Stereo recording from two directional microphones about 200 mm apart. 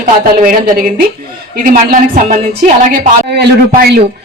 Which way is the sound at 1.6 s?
45° right (ahead or behind).